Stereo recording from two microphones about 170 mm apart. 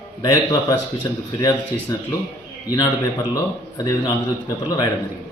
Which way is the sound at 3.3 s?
20° left (ahead or behind).